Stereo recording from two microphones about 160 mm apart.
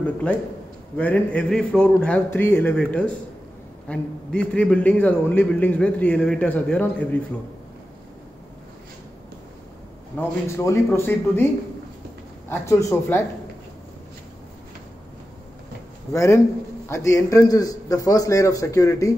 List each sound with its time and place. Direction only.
0.0 s a man's voice: 10° left (ahead or behind)
10.1 s a man's voice: 15° left (ahead or behind)
12.4 s a man's voice: 15° left (ahead or behind)
16.1 s a man's voice: 20° left (ahead or behind)